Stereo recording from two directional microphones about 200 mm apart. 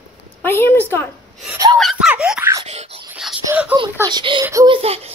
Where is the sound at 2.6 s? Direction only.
30° right (ahead or behind).